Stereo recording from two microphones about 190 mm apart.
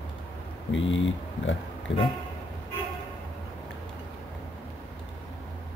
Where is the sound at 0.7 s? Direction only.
80° left.